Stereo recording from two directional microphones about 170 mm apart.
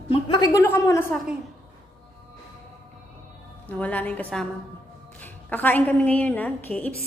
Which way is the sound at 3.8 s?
10° left (ahead or behind).